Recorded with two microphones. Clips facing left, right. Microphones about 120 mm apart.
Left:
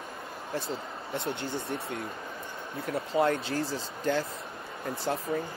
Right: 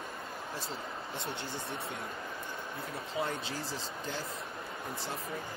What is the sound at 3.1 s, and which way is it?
Speech, 70° left (ahead or behind).